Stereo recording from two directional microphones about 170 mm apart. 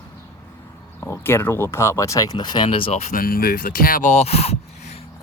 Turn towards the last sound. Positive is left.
turn(degrees=35)  # may be behind; listen again after turning